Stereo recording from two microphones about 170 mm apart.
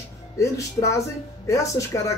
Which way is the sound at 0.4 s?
20° left (ahead or behind).